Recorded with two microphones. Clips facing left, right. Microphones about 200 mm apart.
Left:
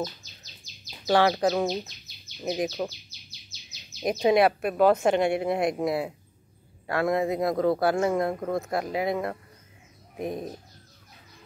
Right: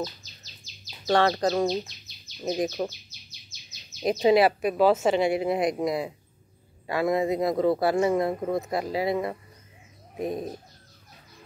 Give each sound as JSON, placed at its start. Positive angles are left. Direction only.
{"t": 1.0, "sound": "speech", "side_deg": 5}
{"t": 4.0, "sound": "speech", "side_deg": 0}